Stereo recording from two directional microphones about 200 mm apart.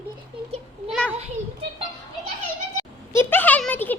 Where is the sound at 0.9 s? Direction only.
Centre (ahead or behind).